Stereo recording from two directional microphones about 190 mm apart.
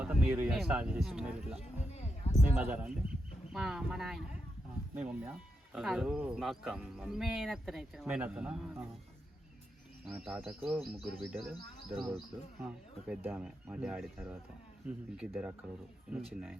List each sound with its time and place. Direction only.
0.0 s speech: 5° right (ahead or behind)
2.3 s a sound: 35° left (ahead or behind)
2.6 s speech: 10° right (ahead or behind)
10.1 s speech: 5° right (ahead or behind)